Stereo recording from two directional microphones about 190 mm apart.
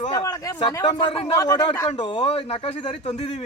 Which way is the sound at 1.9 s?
30° left (ahead or behind).